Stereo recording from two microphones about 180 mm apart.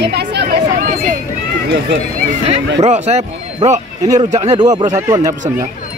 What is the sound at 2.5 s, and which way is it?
Speech, 40° right (ahead or behind).